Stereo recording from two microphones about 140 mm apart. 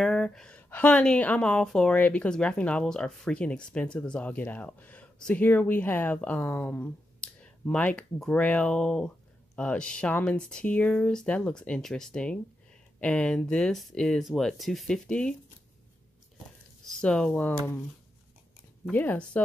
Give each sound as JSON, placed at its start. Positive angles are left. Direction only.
{"t": 0.0, "sound": "a woman's voice", "side_deg": 0}
{"t": 16.8, "sound": "a woman's voice", "side_deg": 5}
{"t": 18.9, "sound": "a woman's voice", "side_deg": 10}